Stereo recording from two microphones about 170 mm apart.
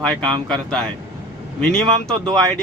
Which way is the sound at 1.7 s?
5° left (ahead or behind).